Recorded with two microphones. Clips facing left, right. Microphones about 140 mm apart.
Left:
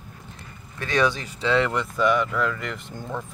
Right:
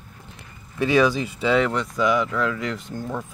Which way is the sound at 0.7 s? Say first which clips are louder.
Right 4 dB; 10° right (ahead or behind).